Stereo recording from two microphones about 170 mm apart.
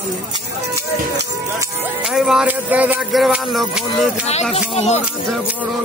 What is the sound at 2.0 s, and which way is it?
Music, 5° right (ahead or behind).